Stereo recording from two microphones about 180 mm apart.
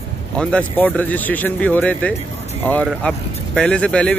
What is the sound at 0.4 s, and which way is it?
Speech, 5° left (ahead or behind).